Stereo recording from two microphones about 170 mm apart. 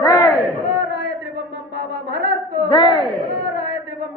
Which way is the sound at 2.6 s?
25° left (ahead or behind).